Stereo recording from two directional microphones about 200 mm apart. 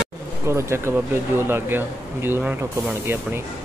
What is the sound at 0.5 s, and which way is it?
Speech, 15° right (ahead or behind).